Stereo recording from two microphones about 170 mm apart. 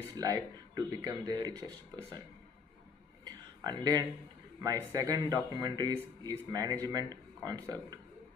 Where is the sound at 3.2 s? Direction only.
25° right (ahead or behind).